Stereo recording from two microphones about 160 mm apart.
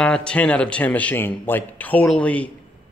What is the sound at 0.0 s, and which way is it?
Speech, 5° left (ahead or behind).